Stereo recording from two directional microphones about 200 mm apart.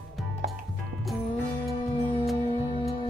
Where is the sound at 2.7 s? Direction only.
25° left (ahead or behind).